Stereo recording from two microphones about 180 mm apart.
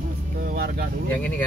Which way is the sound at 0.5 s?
60° right (ahead or behind).